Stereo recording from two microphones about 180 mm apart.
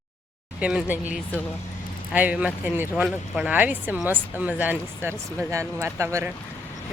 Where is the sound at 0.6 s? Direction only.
5° right (ahead or behind).